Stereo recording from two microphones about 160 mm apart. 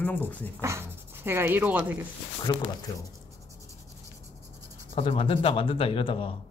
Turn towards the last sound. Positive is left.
turn(degrees=35)  # may be behind; listen again after turning